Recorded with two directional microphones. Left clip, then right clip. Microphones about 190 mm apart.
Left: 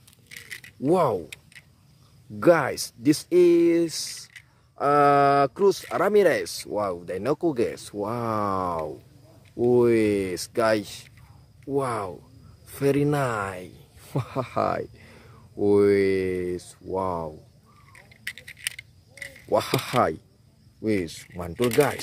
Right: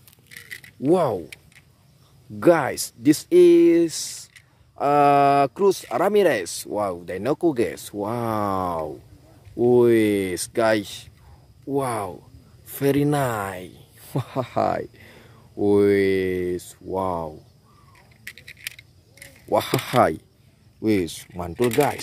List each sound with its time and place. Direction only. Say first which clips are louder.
0.3 s a sound: right 1 dB; 5° left (ahead or behind)
0.8 s speech: right 2 dB; 5° right (ahead or behind)
2.4 s speech: right 1 dB; 10° right (ahead or behind)
17.9 s a sound: left 4 dB; 10° left (ahead or behind)
19.5 s speech: right 2 dB; 10° right (ahead or behind)
21.3 s speech: right 1 dB; 5° right (ahead or behind)